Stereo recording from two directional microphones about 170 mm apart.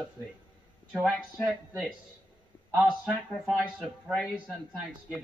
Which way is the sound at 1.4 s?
5° right (ahead or behind).